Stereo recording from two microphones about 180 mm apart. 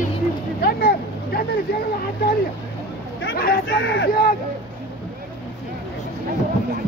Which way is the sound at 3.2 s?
60° left (ahead or behind).